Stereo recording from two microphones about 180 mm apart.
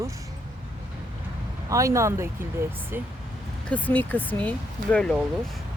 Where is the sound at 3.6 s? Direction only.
10° left (ahead or behind).